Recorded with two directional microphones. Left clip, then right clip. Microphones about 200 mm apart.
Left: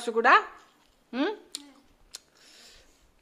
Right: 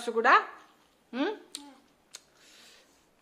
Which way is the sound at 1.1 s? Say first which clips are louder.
Left 2 dB; 20° left (ahead or behind).